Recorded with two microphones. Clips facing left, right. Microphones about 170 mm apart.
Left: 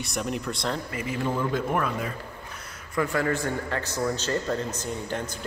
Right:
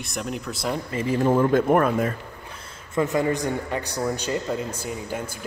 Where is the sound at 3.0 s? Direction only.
20° right (ahead or behind).